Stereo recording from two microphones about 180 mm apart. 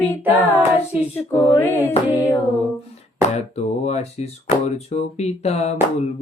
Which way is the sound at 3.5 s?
35° left (ahead or behind).